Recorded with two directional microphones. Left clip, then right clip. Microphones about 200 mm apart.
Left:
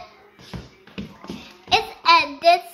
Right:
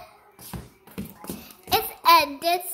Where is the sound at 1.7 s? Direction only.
25° right (ahead or behind).